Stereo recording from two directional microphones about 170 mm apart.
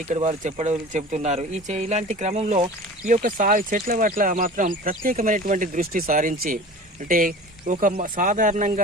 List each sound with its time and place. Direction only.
0.1 s speech: 45° right (ahead or behind)
3.1 s speech: 50° right (ahead or behind)